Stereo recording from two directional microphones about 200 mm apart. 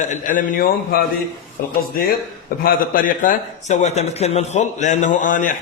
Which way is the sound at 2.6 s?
45° left (ahead or behind).